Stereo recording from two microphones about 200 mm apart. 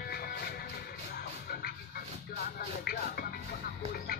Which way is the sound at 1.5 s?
50° left (ahead or behind).